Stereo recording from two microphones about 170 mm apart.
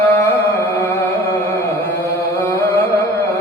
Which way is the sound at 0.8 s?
15° left (ahead or behind).